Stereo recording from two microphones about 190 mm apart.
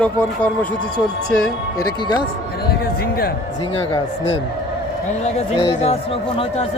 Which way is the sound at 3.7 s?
20° left (ahead or behind).